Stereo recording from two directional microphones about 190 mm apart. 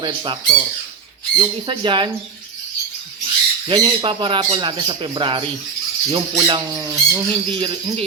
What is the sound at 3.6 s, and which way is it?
Speech, 25° right (ahead or behind).